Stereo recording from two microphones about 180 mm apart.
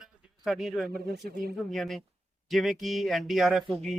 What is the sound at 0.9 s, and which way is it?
Speech, 60° right (ahead or behind).